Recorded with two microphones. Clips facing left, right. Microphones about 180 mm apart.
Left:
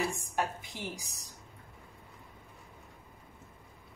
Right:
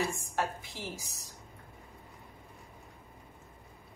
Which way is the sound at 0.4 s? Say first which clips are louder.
Even; 15° left (ahead or behind).